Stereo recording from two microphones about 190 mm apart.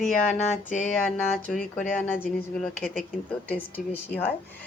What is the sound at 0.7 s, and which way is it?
Speech, 40° left (ahead or behind).